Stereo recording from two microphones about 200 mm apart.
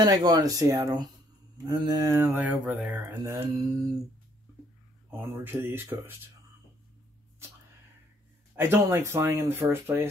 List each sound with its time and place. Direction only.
0.0 s speech: 20° right (ahead or behind)
5.1 s speech: 10° right (ahead or behind)
8.5 s speech: 10° right (ahead or behind)